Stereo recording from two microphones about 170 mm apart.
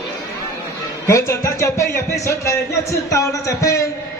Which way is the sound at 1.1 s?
15° left (ahead or behind).